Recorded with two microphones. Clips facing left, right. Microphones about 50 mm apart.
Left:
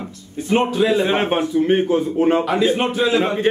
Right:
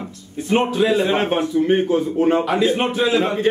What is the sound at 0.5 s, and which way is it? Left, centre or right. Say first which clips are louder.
Speech: even; centre.